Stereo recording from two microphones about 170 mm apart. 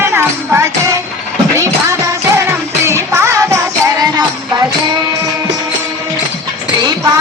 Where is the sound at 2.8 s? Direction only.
15° right (ahead or behind).